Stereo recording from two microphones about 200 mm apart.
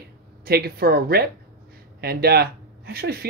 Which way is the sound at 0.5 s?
50° right (ahead or behind).